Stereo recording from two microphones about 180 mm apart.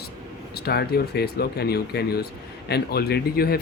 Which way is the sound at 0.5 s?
60° left (ahead or behind).